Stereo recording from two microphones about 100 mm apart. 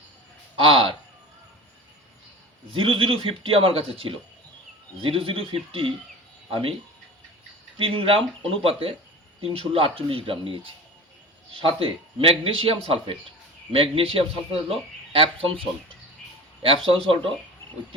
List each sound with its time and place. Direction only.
0.5 s speech: 65° right (ahead or behind)
2.6 s a man's voice: 65° right (ahead or behind)
7.8 s a man's voice: 65° right (ahead or behind)
16.6 s speech: 65° right (ahead or behind)